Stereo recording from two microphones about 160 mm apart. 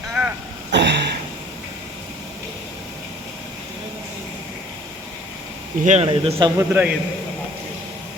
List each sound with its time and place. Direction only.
0.1 s throat clearing: 5° right (ahead or behind)
0.7 s a sound: 90° right
5.8 s speech: 50° right (ahead or behind)
6.1 s speech: 30° right (ahead or behind)
6.6 s a man's voice: 10° right (ahead or behind)